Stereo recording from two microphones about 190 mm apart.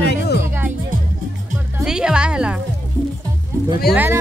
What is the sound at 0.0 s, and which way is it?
Music, 60° left (ahead or behind).